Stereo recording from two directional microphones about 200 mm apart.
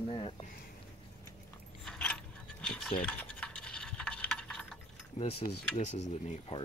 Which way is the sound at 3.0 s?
5° left (ahead or behind).